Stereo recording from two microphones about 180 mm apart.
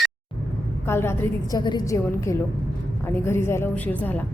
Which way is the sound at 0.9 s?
15° left (ahead or behind).